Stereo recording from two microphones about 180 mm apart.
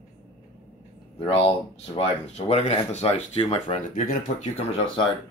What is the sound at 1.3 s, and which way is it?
Speech, 30° left (ahead or behind).